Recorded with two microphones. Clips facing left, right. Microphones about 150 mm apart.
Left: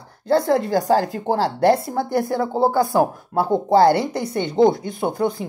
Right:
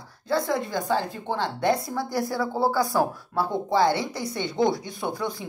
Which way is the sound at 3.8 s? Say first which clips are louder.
Left 7 dB; 60° left (ahead or behind).